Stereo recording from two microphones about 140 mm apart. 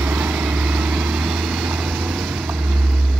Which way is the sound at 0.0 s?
10° right (ahead or behind).